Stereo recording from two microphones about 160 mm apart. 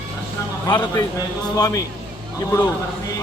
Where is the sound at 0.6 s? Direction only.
20° left (ahead or behind).